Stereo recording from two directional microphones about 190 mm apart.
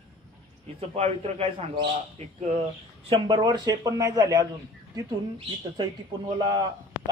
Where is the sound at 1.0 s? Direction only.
35° right (ahead or behind).